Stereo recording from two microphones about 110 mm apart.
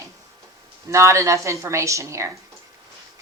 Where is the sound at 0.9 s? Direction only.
25° right (ahead or behind).